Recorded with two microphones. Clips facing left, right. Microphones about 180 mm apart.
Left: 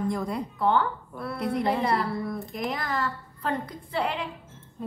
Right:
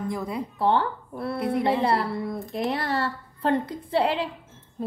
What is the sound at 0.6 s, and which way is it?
Speech, 30° right (ahead or behind).